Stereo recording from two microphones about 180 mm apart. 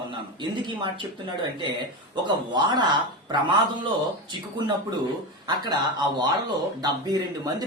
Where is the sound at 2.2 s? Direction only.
25° right (ahead or behind).